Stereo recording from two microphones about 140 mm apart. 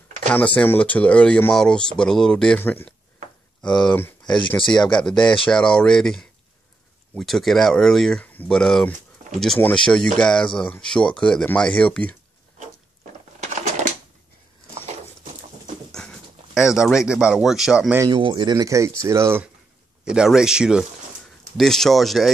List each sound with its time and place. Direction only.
0.6 s speech: 10° left (ahead or behind)
4.6 s speech: 35° left (ahead or behind)
4.9 s speech: 5° left (ahead or behind)
13.4 s typewriter: 60° right (ahead or behind)
15.9 s speech: 5° left (ahead or behind)
18.1 s speech: 35° right (ahead or behind); by 19.5 s 15° right (ahead or behind)
20.1 s speech: 5° right (ahead or behind)